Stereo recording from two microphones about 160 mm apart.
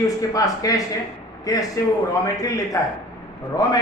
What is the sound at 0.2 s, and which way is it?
A man's voice, 20° left (ahead or behind).